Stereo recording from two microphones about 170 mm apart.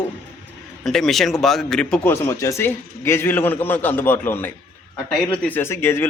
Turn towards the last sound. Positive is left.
turn(degrees=15)  # may be behind; listen again after turning